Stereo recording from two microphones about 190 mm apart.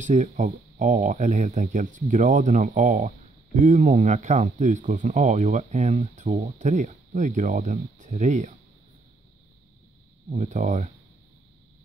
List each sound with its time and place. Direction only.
0.0 s speech: 40° right (ahead or behind)
10.3 s speech: 40° right (ahead or behind)